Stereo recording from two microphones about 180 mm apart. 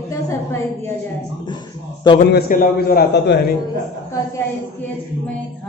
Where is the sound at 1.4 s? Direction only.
25° left (ahead or behind).